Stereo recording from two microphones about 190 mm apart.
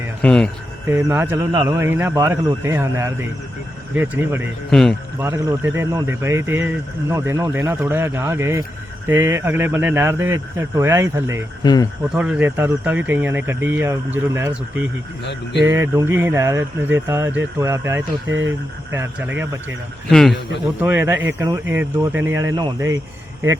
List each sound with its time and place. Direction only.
0.2 s speech: 5° left (ahead or behind)
0.9 s speech: 15° right (ahead or behind)
4.7 s speech: 5° left (ahead or behind)
5.2 s speech: 15° right (ahead or behind)
11.6 s speech: 20° left (ahead or behind)
12.0 s speech: 5° right (ahead or behind)
18.3 s speech: 80° right
18.9 s speech: 10° right (ahead or behind)
20.1 s speech: centre (ahead or behind)
20.8 s speech: 10° right (ahead or behind)